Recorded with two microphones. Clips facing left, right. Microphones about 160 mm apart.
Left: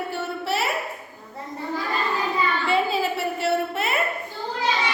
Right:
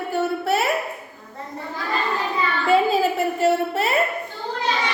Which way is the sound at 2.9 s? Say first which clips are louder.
Right 4 dB; 45° right (ahead or behind).